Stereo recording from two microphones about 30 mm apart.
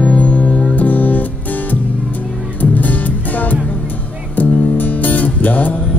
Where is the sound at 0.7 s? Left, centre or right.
Left.